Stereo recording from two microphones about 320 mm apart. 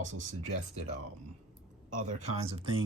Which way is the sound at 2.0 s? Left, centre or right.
Centre.